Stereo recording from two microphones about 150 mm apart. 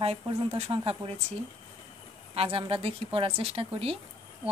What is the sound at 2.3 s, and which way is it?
Speech, 40° right (ahead or behind).